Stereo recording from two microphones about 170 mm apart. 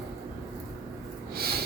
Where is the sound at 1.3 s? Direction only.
65° right (ahead or behind).